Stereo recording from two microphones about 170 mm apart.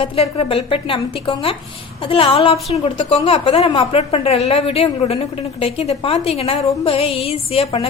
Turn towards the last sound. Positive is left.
turn(degrees=35)  # may be behind; listen again after turning